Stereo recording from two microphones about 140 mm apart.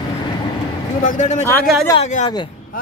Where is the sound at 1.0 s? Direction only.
65° left (ahead or behind).